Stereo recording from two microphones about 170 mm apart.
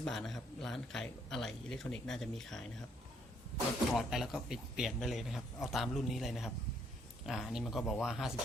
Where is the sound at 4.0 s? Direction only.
Centre (ahead or behind).